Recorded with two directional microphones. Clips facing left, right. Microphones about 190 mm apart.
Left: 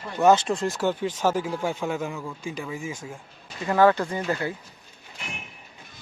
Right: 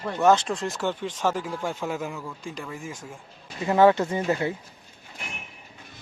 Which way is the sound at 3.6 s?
20° right (ahead or behind).